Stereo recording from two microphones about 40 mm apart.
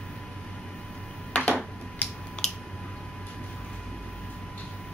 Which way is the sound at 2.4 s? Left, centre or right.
Left.